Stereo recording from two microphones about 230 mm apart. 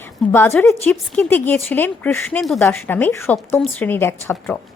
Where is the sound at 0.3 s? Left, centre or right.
Centre.